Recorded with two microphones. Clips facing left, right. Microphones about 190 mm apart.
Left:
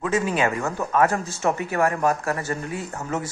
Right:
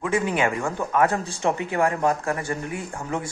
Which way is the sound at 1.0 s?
30° right (ahead or behind).